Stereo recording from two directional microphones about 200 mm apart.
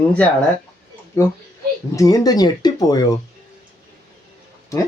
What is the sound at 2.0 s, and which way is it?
Speech, 20° left (ahead or behind).